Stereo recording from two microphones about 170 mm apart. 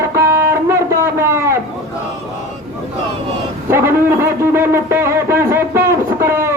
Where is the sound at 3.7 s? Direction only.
15° right (ahead or behind).